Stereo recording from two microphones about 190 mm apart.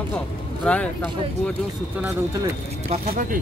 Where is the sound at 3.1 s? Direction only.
45° right (ahead or behind).